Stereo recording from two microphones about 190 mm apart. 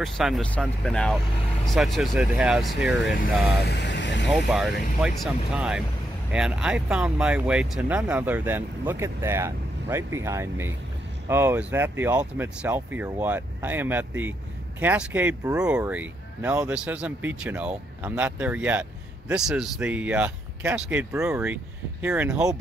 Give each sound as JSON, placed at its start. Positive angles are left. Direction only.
{"t": 0.0, "sound": "speech", "side_deg": 0}
{"t": 3.6, "sound": "vehicle", "side_deg": 65}
{"t": 4.3, "sound": "speech", "side_deg": 0}